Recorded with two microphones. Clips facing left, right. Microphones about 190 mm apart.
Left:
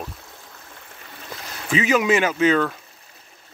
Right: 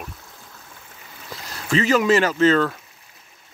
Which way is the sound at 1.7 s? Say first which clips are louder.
Right 1 dB; 5° left (ahead or behind).